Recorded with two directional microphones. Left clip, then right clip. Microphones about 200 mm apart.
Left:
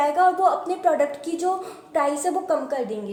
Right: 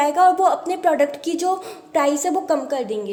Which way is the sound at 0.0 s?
35° right (ahead or behind).